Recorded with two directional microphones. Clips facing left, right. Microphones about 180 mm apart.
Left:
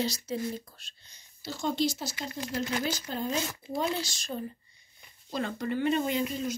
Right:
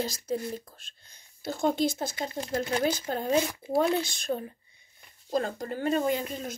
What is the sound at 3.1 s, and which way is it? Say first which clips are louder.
Speech: right 5 dB; 50° right (ahead or behind).